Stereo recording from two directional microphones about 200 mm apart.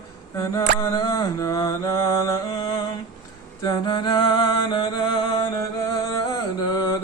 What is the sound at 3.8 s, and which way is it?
Mantra, 20° left (ahead or behind).